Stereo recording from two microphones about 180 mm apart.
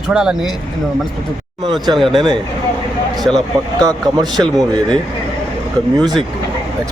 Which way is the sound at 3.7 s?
25° right (ahead or behind).